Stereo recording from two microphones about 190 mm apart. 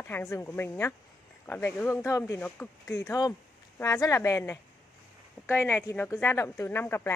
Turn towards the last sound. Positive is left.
turn(degrees=10)  # may be behind; listen again after turning